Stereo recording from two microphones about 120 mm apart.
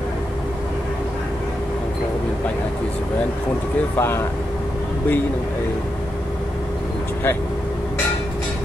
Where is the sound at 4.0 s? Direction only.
20° left (ahead or behind).